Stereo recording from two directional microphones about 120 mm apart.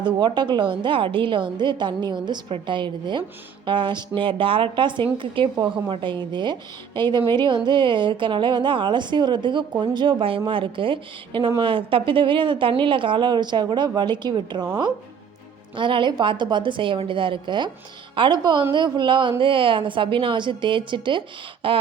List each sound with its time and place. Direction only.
0.0 s a woman's voice: 40° right (ahead or behind)
15.7 s a woman's voice: 45° right (ahead or behind)